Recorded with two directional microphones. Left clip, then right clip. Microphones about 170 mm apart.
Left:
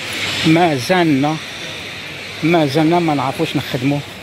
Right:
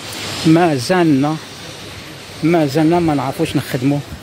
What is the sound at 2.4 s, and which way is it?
Speech, 10° right (ahead or behind).